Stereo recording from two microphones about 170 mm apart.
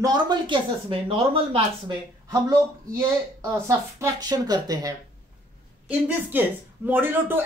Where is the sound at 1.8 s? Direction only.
20° right (ahead or behind).